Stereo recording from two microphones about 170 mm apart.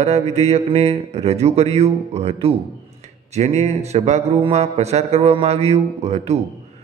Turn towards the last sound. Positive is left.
turn(degrees=-40)  # may be behind; listen again after turning